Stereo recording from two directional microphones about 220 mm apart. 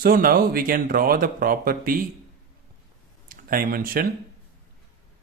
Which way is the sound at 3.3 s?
40° right (ahead or behind).